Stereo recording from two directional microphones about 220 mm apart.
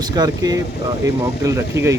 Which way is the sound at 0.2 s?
15° right (ahead or behind).